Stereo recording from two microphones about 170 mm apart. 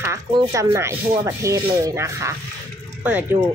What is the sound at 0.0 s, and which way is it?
Speech, 20° right (ahead or behind).